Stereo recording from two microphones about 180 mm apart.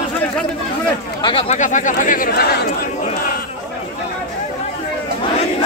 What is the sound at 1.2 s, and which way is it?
Speech, 30° left (ahead or behind).